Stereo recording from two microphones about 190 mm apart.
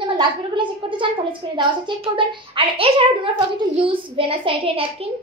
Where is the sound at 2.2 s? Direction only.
30° right (ahead or behind).